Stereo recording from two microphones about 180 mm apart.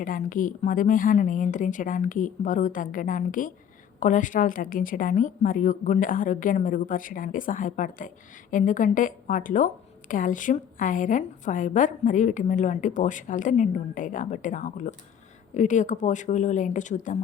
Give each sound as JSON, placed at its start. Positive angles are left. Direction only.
{"t": 0.0, "sound": "a woman's voice", "side_deg": 50}